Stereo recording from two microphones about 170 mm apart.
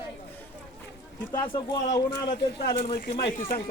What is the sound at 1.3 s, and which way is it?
Speech, 25° left (ahead or behind).